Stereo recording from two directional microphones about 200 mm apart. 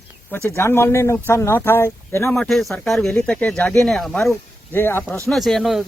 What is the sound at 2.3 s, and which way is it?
Speech, centre (ahead or behind).